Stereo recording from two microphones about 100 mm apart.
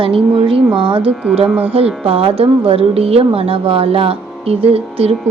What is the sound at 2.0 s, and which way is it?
A woman's voice, 70° right (ahead or behind).